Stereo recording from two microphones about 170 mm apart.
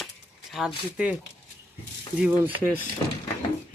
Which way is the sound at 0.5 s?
5° right (ahead or behind).